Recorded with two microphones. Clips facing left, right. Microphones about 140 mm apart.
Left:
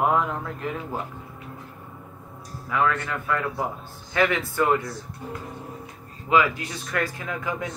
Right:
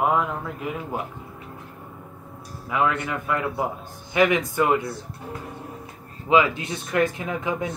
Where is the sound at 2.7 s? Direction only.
15° right (ahead or behind).